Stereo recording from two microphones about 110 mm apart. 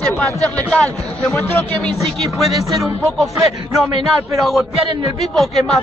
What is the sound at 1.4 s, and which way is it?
Speech, 20° left (ahead or behind).